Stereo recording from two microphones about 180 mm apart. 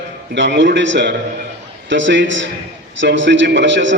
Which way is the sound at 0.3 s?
80° right.